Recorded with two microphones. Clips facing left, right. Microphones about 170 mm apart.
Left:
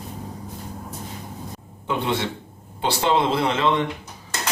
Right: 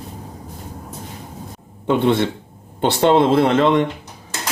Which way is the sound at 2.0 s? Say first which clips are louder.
Right 6 dB; 55° right (ahead or behind).